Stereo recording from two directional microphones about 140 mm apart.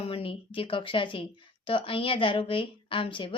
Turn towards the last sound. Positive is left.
turn(degrees=40)  # may be behind; listen again after turning